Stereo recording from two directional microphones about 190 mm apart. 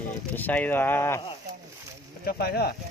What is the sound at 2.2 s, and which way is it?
Speech, 55° left (ahead or behind).